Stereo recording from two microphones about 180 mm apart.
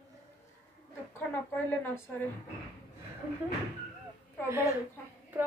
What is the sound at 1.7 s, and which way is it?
Speech, 10° left (ahead or behind).